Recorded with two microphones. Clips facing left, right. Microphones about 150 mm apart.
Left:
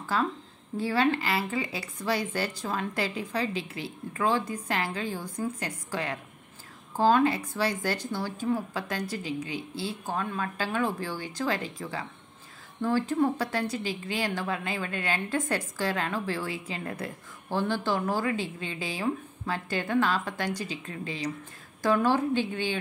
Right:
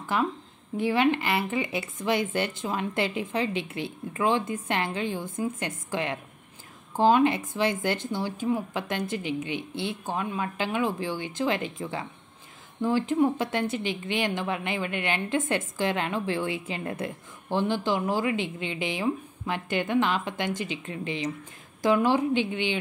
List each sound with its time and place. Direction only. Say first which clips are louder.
0.0 s a woman's voice: right 1 dB; 20° right (ahead or behind)